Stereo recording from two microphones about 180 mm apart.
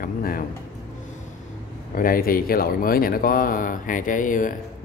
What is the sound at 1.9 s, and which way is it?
Speech, 55° left (ahead or behind).